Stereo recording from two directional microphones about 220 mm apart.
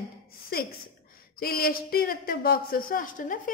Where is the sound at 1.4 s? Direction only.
45° left (ahead or behind).